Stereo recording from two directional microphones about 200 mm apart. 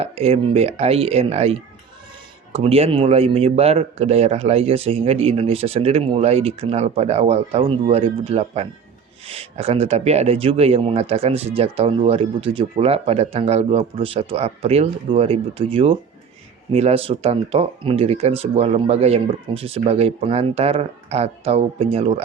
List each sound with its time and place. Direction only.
0.0 s speech: 30° right (ahead or behind)